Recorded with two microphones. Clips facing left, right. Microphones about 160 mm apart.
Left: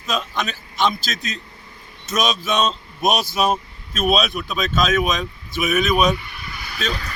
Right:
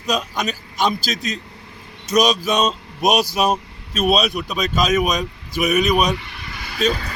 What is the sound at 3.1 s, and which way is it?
A man's voice, 40° right (ahead or behind).